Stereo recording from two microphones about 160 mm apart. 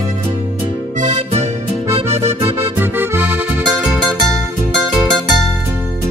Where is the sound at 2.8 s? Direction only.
10° right (ahead or behind).